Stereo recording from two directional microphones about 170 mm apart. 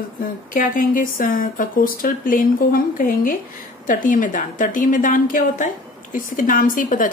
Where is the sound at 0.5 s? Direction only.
55° left (ahead or behind).